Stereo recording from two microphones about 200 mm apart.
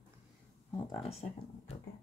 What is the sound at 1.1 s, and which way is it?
Speech, 30° left (ahead or behind).